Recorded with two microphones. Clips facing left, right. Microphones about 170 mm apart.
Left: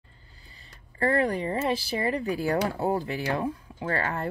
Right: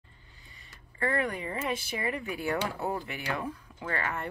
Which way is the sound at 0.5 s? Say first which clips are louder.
Left 2 dB; 35° left (ahead or behind).